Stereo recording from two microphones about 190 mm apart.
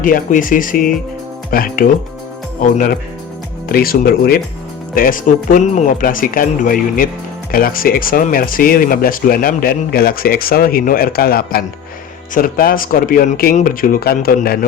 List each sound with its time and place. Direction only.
0.0 s speech: 45° left (ahead or behind)